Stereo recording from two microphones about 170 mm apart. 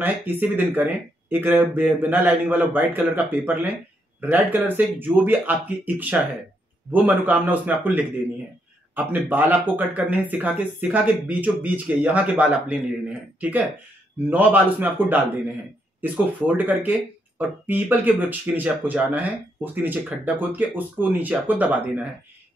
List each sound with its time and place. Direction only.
0.0 s speech: 10° right (ahead or behind)